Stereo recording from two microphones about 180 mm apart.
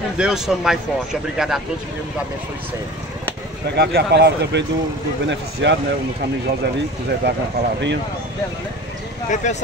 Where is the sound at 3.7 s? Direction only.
65° right (ahead or behind); by 5.8 s 80° right.